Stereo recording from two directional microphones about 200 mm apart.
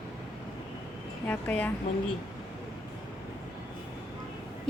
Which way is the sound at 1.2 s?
10° left (ahead or behind).